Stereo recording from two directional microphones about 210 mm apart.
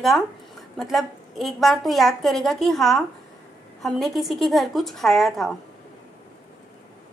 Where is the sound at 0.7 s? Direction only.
Centre (ahead or behind).